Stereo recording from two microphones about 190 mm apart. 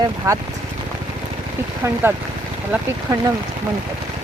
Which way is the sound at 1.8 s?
10° right (ahead or behind).